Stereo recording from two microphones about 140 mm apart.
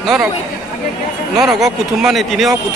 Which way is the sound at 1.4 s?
Centre (ahead or behind).